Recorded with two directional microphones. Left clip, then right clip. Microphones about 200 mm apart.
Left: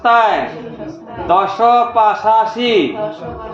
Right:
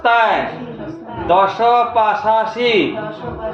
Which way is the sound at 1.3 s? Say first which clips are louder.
Left 1 dB; 15° left (ahead or behind).